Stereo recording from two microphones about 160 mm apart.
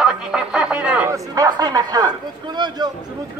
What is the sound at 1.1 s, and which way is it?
Speech, 20° right (ahead or behind).